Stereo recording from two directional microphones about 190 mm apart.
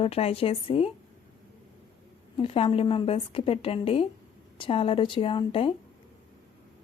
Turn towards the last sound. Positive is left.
turn(degrees=25)  # may be behind; listen again after turning